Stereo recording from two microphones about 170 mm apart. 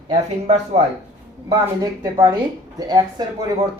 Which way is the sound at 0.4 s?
40° right (ahead or behind).